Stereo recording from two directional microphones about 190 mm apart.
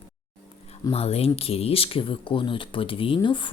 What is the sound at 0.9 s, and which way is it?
Speech, 30° left (ahead or behind).